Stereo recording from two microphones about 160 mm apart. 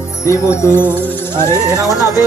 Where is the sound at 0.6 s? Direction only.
15° left (ahead or behind).